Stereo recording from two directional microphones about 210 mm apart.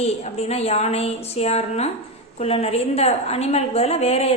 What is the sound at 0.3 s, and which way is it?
A woman's voice, 30° left (ahead or behind).